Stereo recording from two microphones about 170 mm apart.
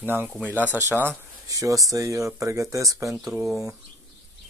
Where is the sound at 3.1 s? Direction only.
5° right (ahead or behind).